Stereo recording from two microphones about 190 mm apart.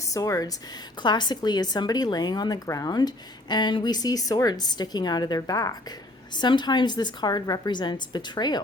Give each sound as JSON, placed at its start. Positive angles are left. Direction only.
{"t": 0.1, "sound": "a woman's voice", "side_deg": 15}